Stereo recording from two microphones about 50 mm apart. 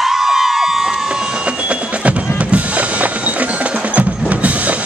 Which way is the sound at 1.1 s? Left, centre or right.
Right.